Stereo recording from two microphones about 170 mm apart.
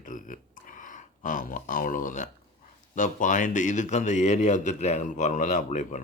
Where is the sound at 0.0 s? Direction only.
50° left (ahead or behind).